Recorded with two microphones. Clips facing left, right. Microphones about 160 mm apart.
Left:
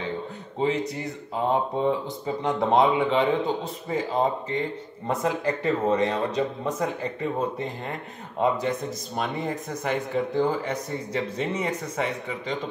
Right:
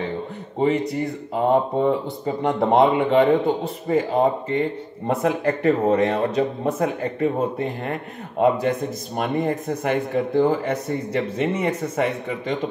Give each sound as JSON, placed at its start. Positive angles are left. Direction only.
{"t": 1.3, "sound": "speech", "side_deg": -60}